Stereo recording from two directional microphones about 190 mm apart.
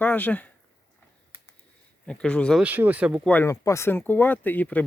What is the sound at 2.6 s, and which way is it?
Speech, 10° right (ahead or behind).